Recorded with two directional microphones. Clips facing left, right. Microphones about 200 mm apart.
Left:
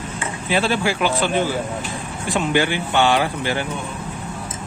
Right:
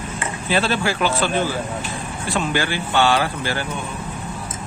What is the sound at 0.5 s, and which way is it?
Speech, 15° left (ahead or behind).